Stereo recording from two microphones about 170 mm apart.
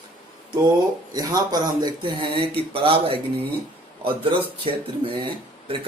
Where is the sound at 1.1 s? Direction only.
20° right (ahead or behind).